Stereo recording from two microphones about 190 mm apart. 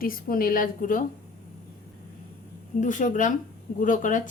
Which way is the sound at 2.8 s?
40° left (ahead or behind).